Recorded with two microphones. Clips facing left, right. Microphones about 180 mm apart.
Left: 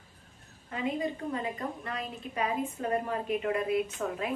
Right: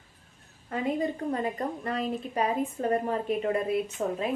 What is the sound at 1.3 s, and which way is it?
A woman's voice, 40° right (ahead or behind).